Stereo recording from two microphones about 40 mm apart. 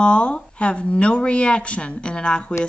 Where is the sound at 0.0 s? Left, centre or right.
Left.